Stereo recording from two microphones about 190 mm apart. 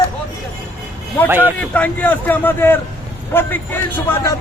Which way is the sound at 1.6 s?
5° left (ahead or behind).